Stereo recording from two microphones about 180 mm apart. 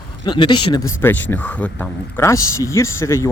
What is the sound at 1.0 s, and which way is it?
Speech, 10° left (ahead or behind).